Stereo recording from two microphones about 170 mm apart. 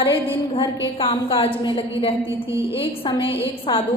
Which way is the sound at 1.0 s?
30° left (ahead or behind).